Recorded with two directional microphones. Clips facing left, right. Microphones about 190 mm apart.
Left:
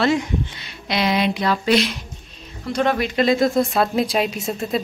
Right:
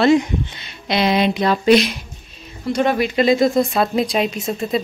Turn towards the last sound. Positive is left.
turn(degrees=0)  # may be behind; listen again after turning